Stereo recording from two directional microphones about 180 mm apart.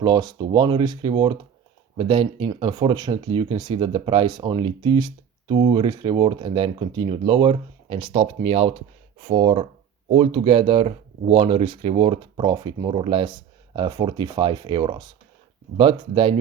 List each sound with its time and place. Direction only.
0.0 s speech: 25° right (ahead or behind)